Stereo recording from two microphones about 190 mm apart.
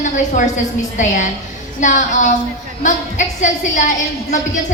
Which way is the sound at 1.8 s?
40° left (ahead or behind).